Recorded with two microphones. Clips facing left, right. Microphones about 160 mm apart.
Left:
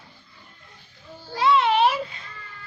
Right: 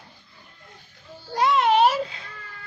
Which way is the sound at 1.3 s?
45° right (ahead or behind).